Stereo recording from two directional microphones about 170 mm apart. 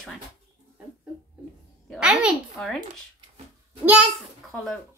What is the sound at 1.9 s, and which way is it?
Speech, 5° right (ahead or behind).